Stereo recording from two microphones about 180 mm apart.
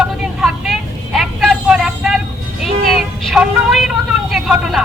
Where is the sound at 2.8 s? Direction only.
Centre (ahead or behind).